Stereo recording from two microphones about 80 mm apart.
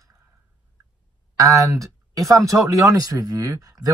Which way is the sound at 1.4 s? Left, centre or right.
Right.